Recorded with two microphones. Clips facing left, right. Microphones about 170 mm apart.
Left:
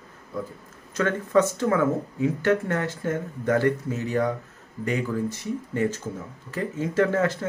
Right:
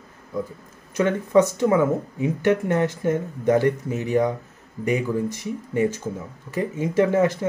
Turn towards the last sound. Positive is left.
turn(degrees=-15)  # may be behind; listen again after turning